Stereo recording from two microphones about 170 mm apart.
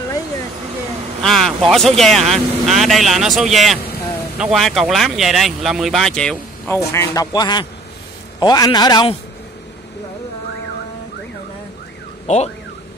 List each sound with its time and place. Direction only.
1.2 s speech: centre (ahead or behind)
6.9 s speech: 20° left (ahead or behind)
12.3 s speech: 45° left (ahead or behind)